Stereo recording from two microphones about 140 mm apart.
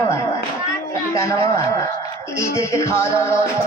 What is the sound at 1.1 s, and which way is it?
Music, 20° left (ahead or behind).